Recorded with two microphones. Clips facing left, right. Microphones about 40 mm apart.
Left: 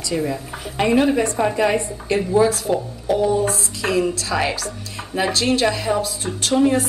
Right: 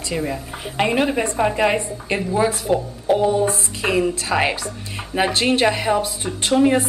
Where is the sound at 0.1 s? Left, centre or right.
Centre.